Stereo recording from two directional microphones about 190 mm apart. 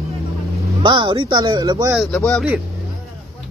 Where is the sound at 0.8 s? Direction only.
25° right (ahead or behind).